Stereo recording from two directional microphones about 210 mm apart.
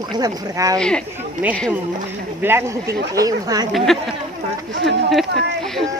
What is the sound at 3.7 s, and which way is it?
Speech, centre (ahead or behind).